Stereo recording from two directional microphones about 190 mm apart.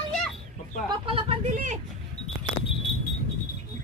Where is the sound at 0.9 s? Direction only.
30° right (ahead or behind).